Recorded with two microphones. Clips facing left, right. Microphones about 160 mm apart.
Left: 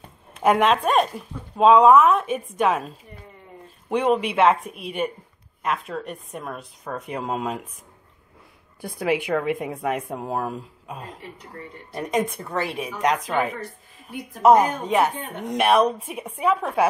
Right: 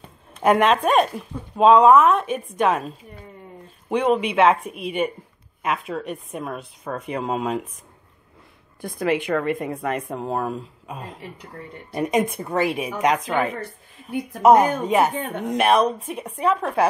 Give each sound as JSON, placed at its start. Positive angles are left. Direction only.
{"t": 0.3, "sound": "speech", "side_deg": 0}
{"t": 3.9, "sound": "speech", "side_deg": 0}
{"t": 8.8, "sound": "speech", "side_deg": 10}
{"t": 11.9, "sound": "a woman's voice", "side_deg": -10}
{"t": 15.1, "sound": "speech", "side_deg": -60}
{"t": 15.5, "sound": "speech", "side_deg": 0}